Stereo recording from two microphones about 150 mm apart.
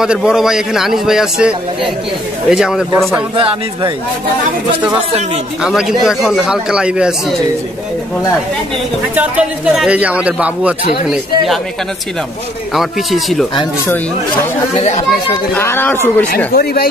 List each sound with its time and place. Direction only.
0.0 s a man's voice: 5° right (ahead or behind)
2.5 s a man's voice: 5° right (ahead or behind)
5.6 s a man's voice: 5° right (ahead or behind)
9.1 s a man's voice: 10° right (ahead or behind)
12.7 s a man's voice: centre (ahead or behind)
15.5 s speech: 15° left (ahead or behind)
16.5 s speech: 90° left